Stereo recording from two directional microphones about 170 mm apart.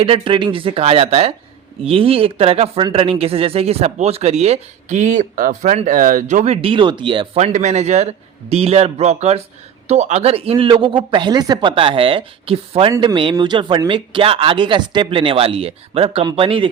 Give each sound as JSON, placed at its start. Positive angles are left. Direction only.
{"t": 0.0, "sound": "speech", "side_deg": -30}
{"t": 12.9, "sound": "a man's voice", "side_deg": -25}